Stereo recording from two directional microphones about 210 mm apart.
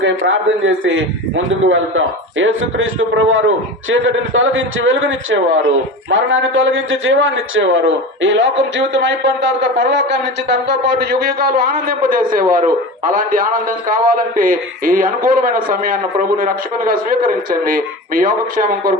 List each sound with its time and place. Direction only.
0.3 s a man's voice: 65° right (ahead or behind); by 18.9 s 40° right (ahead or behind)